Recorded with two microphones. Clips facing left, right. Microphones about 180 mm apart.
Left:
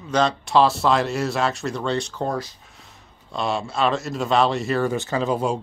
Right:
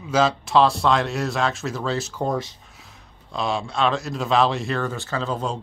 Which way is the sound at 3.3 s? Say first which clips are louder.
Even; centre (ahead or behind).